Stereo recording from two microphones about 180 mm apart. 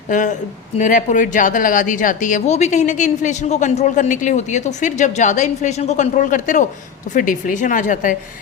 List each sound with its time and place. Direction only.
0.1 s a woman's voice: 45° left (ahead or behind)